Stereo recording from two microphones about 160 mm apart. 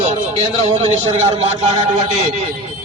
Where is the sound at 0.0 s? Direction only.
40° right (ahead or behind).